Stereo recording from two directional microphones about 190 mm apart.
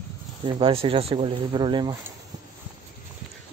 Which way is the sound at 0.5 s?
25° right (ahead or behind).